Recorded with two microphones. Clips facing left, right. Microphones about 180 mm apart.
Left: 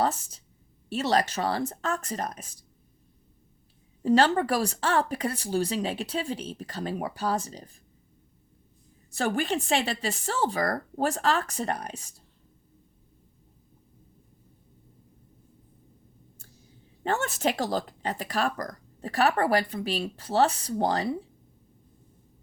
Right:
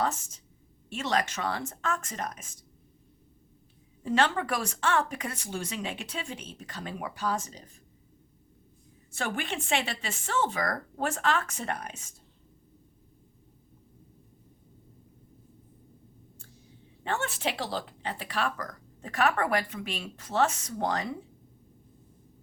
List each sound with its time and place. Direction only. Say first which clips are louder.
0.0 s speech: left 3 dB; 35° left (ahead or behind)
4.0 s speech: left 5 dB; 35° left (ahead or behind)
9.1 s speech: left 6 dB; 35° left (ahead or behind)
17.0 s speech: left 4 dB; 40° left (ahead or behind)